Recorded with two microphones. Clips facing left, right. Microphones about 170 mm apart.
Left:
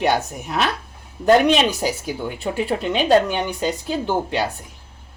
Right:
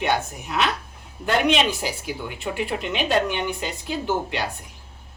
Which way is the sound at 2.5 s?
30° left (ahead or behind).